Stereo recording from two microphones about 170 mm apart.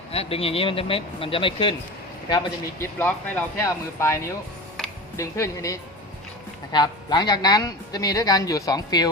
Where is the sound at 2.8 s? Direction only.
10° left (ahead or behind).